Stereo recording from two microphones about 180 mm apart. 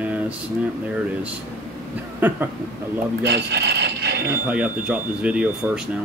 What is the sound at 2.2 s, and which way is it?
Speech, 10° right (ahead or behind).